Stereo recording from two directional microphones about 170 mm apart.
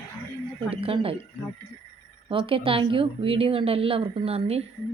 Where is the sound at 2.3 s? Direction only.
30° right (ahead or behind).